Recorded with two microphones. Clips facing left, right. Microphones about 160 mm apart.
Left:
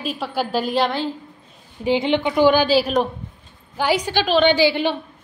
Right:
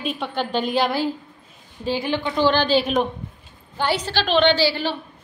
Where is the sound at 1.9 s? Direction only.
20° left (ahead or behind).